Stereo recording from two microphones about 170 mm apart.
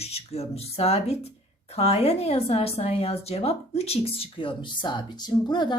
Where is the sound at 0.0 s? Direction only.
35° left (ahead or behind).